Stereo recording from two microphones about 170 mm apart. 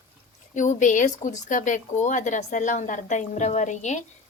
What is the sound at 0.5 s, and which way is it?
Speech, 45° left (ahead or behind).